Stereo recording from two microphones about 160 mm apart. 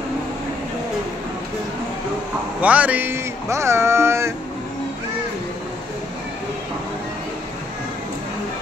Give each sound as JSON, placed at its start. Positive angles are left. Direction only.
{"t": 2.6, "sound": "speech", "side_deg": -10}